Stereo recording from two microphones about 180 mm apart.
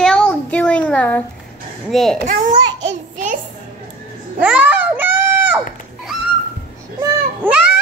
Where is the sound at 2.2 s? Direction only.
45° right (ahead or behind).